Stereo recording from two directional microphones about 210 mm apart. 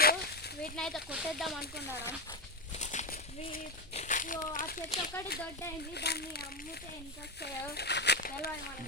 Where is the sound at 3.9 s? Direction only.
35° left (ahead or behind).